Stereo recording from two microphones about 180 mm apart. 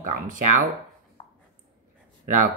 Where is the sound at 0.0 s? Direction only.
45° right (ahead or behind).